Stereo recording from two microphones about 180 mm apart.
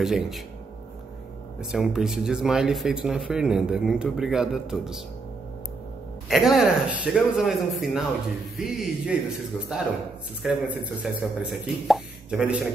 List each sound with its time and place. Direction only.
0.0 s speech: centre (ahead or behind)
1.6 s speech: centre (ahead or behind)
6.2 s speech: centre (ahead or behind)